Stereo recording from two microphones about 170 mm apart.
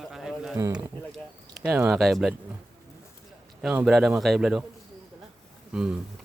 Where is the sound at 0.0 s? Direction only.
Centre (ahead or behind).